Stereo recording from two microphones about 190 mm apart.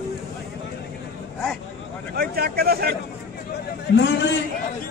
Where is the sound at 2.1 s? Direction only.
55° right (ahead or behind).